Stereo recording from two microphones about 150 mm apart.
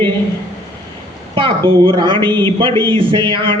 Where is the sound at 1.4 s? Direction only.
35° right (ahead or behind).